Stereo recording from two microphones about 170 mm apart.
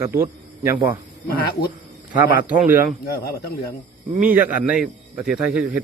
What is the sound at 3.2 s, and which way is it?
Speech, 70° left (ahead or behind).